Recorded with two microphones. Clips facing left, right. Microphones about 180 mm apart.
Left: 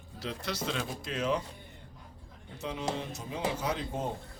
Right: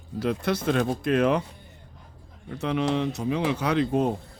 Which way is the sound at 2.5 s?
70° right (ahead or behind).